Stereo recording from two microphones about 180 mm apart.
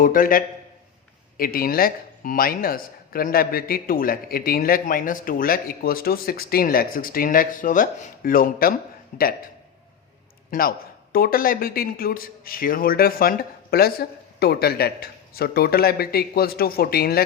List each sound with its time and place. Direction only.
0.0 s speech: 50° left (ahead or behind)
10.5 s speech: 55° left (ahead or behind)